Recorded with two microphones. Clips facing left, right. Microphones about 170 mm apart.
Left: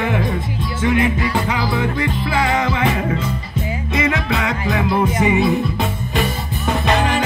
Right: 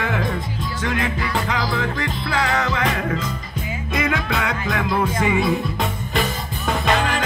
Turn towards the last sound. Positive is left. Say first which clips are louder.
# left 3 dB
turn(degrees=10)  # may be behind; listen again after turning